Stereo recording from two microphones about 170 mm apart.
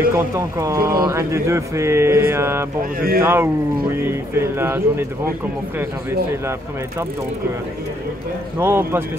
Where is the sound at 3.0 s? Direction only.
60° right (ahead or behind).